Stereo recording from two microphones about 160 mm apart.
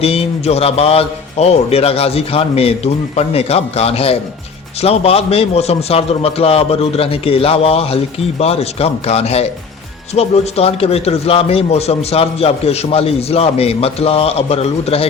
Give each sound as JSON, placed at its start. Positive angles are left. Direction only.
{"t": 0.0, "sound": "a man's voice", "side_deg": 40}